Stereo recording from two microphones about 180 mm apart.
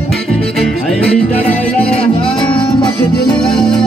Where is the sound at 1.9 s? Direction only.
35° left (ahead or behind).